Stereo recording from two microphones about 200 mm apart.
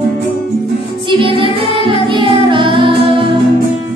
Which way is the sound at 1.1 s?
25° right (ahead or behind).